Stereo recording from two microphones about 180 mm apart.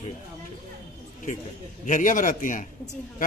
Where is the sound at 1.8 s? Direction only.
45° left (ahead or behind).